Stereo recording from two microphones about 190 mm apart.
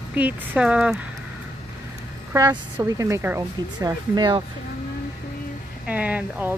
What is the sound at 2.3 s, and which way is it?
A woman's voice, 20° right (ahead or behind).